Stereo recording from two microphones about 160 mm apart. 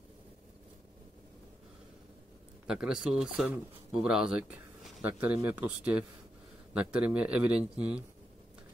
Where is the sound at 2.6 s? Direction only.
5° right (ahead or behind).